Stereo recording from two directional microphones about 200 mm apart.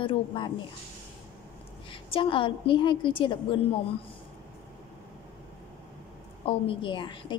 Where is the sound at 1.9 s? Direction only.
25° left (ahead or behind).